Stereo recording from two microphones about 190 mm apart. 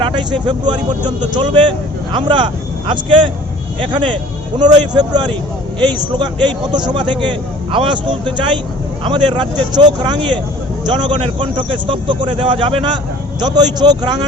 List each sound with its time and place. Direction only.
0.0 s vehicle: 25° right (ahead or behind)
0.4 s speech: 25° right (ahead or behind)